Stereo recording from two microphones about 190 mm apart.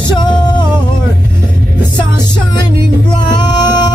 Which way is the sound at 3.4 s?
25° left (ahead or behind).